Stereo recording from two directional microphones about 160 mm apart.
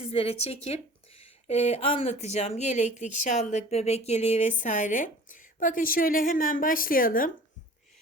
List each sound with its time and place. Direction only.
0.0 s speech: 35° left (ahead or behind); by 7.3 s 60° left (ahead or behind)